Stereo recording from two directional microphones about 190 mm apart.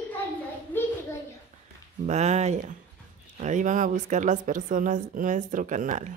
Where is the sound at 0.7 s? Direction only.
10° left (ahead or behind).